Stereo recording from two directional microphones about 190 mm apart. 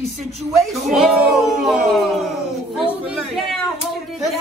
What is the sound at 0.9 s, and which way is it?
Speech, centre (ahead or behind).